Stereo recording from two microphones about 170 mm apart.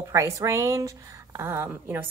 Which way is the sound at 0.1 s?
15° right (ahead or behind).